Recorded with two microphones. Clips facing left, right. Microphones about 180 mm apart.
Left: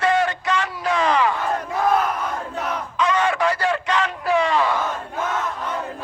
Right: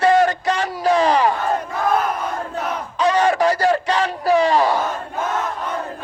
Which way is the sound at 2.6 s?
35° right (ahead or behind).